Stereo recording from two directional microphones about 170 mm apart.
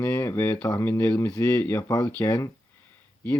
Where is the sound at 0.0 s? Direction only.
10° left (ahead or behind).